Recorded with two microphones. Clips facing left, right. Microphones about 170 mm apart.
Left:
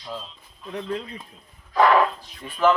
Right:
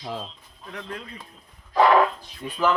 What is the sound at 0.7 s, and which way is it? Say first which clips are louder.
Speech: left 7 dB; 25° left (ahead or behind).